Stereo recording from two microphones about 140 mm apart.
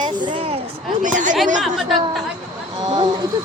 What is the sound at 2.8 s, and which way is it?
Speech, 30° right (ahead or behind).